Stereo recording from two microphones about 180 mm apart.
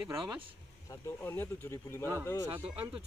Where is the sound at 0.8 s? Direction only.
15° left (ahead or behind).